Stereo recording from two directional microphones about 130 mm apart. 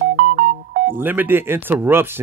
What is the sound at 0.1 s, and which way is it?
Music, 85° right.